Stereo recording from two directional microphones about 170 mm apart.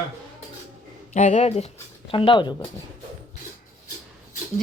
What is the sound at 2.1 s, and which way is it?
Speech, 30° left (ahead or behind).